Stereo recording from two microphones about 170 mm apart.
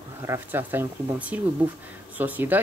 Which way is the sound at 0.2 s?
15° right (ahead or behind).